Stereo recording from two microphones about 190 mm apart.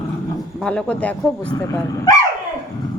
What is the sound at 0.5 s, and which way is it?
Speech, 5° left (ahead or behind).